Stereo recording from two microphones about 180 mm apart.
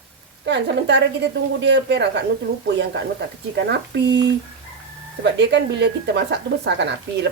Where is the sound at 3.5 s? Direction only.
75° right (ahead or behind).